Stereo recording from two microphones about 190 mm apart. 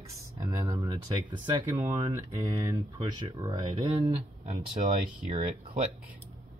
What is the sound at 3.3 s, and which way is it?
Speech, 15° right (ahead or behind).